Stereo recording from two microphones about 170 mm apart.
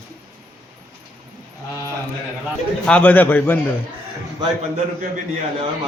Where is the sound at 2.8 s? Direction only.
10° left (ahead or behind).